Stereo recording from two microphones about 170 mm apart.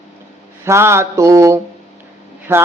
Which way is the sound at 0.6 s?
15° right (ahead or behind).